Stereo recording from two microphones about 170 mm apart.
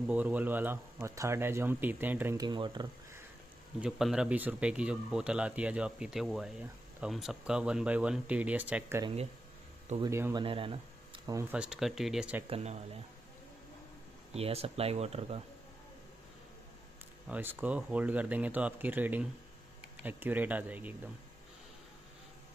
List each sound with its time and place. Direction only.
0.1 s speech: 10° right (ahead or behind)
2.3 s speech: 25° right (ahead or behind)
3.8 s speech: 5° right (ahead or behind)
9.0 s speech: 35° right (ahead or behind)
9.9 s speech: 15° right (ahead or behind)
10.4 s speech: 30° right (ahead or behind)
11.2 s speech: 15° right (ahead or behind)
11.5 s speech: 5° right (ahead or behind)
12.4 s speech: 35° right (ahead or behind)
14.3 s speech: 35° right (ahead or behind)
17.3 s speech: 10° right (ahead or behind)